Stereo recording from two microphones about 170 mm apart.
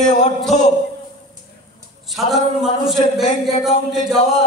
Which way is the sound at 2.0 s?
Centre (ahead or behind).